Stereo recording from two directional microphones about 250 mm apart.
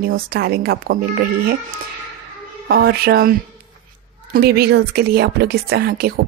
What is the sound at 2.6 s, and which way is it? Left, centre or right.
Speech, right.